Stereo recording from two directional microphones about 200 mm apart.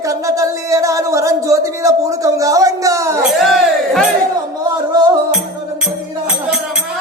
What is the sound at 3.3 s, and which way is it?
Music, centre (ahead or behind).